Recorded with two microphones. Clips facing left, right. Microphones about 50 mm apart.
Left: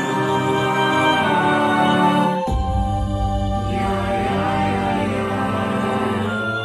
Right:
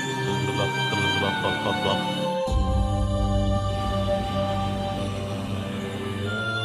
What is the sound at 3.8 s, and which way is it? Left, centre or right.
Music, left.